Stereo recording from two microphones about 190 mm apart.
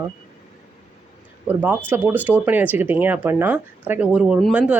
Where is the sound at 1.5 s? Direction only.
10° right (ahead or behind).